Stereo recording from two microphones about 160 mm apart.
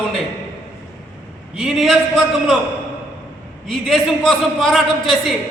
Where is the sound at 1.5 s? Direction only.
5° right (ahead or behind).